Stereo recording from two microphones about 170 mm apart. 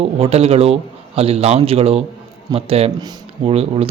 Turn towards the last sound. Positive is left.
turn(degrees=-35)  # may be behind; listen again after turning